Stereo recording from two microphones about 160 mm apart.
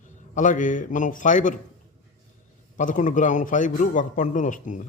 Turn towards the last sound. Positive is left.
turn(degrees=50)  # may be behind; listen again after turning